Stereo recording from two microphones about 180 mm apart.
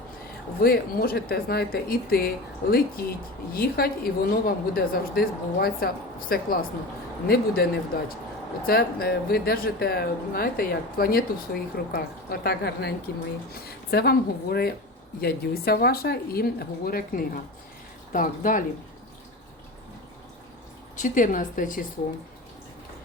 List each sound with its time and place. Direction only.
0.6 s a woman's voice: 55° left (ahead or behind)
21.0 s a woman's voice: 45° left (ahead or behind)